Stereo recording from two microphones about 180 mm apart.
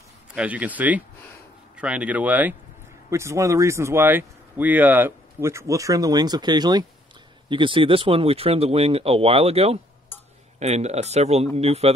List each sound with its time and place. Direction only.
0.3 s speech: 5° right (ahead or behind); by 11.9 s 35° right (ahead or behind)